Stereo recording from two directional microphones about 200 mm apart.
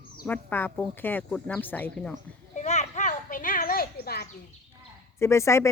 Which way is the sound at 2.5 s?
35° left (ahead or behind).